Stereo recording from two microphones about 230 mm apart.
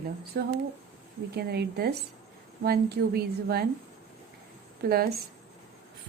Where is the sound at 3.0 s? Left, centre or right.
Right.